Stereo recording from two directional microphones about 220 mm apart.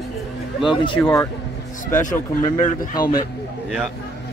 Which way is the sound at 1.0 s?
10° left (ahead or behind).